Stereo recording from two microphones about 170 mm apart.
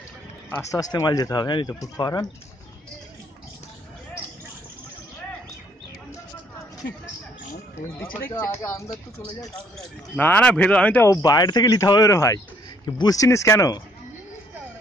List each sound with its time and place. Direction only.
0.6 s speech: 20° left (ahead or behind)
6.8 s speech: 90° left
8.0 s speech: 15° left (ahead or behind)
11.2 s speech: 25° left (ahead or behind)